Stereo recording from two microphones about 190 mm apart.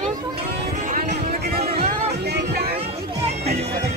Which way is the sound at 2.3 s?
55° right (ahead or behind).